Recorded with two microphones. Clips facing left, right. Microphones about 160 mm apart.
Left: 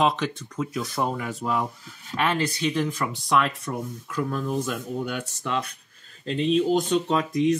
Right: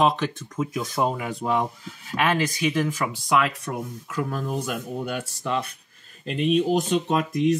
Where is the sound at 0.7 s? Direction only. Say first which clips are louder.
Right 2 dB; 20° right (ahead or behind).